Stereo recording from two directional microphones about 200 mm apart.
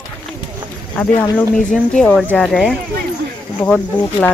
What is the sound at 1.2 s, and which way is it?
Speech, 5° left (ahead or behind).